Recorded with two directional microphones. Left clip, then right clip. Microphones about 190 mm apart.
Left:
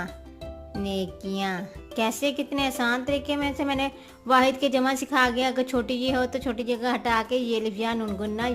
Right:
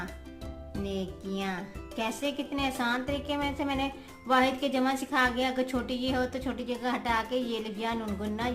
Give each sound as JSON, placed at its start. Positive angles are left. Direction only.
{"t": 0.9, "sound": "speech", "side_deg": 45}